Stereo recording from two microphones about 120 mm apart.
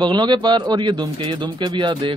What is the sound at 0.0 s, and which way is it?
A man's voice, 40° right (ahead or behind).